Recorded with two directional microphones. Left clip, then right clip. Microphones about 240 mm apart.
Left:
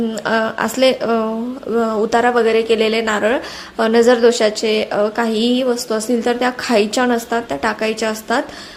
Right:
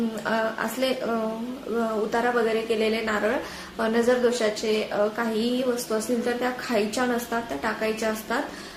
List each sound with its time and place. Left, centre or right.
0.3 s a woman's voice: left